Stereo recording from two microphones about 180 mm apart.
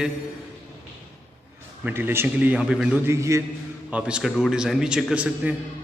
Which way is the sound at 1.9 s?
10° right (ahead or behind).